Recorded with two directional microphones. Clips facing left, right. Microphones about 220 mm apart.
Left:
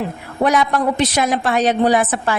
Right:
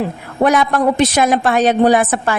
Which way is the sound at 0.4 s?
50° right (ahead or behind).